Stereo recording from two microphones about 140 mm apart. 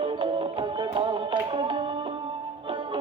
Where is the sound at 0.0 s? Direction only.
35° right (ahead or behind).